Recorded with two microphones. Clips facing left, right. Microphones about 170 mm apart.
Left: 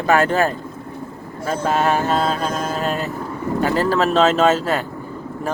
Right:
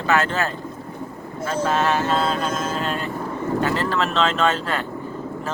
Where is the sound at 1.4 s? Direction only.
45° left (ahead or behind).